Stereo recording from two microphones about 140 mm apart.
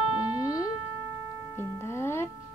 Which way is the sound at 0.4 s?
25° left (ahead or behind).